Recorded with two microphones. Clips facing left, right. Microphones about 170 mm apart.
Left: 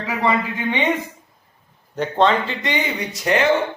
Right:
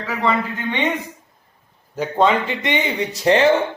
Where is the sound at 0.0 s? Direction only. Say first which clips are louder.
Even; 15° left (ahead or behind).